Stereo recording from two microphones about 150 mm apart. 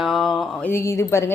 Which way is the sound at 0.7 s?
20° left (ahead or behind).